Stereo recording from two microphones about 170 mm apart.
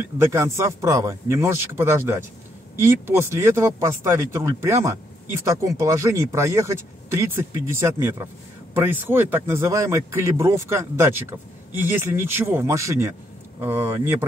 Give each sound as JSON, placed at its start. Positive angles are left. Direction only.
{"t": 0.2, "sound": "a man's voice", "side_deg": -15}